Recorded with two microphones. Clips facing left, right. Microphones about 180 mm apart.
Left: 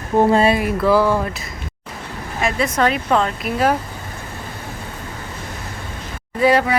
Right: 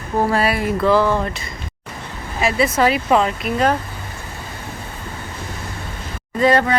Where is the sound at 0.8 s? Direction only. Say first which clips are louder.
Right 1 dB; 10° left (ahead or behind).